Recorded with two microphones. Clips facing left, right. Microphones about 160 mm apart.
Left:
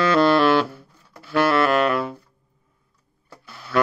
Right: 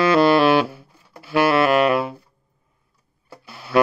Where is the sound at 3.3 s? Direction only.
10° right (ahead or behind).